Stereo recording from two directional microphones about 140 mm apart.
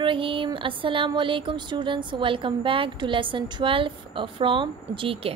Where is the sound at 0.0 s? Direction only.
40° right (ahead or behind).